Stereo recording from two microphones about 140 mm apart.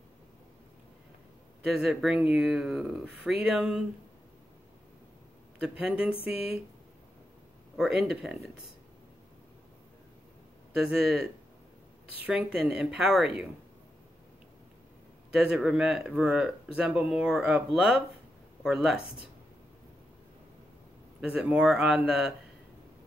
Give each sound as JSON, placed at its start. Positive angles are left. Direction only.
{"t": 1.8, "sound": "speech", "side_deg": -5}
{"t": 5.6, "sound": "speech", "side_deg": -10}
{"t": 6.1, "sound": "speech", "side_deg": 40}
{"t": 7.7, "sound": "speech", "side_deg": -5}
{"t": 10.7, "sound": "speech", "side_deg": -5}
{"t": 15.3, "sound": "speech", "side_deg": -5}
{"t": 21.2, "sound": "speech", "side_deg": -5}